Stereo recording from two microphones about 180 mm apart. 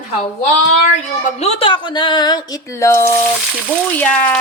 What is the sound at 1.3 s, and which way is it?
Speech, 35° left (ahead or behind).